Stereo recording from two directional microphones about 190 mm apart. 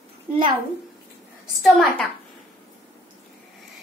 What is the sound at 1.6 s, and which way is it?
Speech, centre (ahead or behind).